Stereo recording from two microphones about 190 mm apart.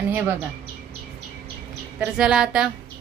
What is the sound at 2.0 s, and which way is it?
Speech, 5° right (ahead or behind).